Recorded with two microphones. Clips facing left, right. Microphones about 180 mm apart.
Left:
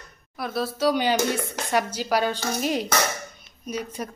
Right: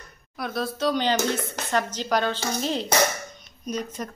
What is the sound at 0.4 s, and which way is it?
A woman's voice, 5° left (ahead or behind).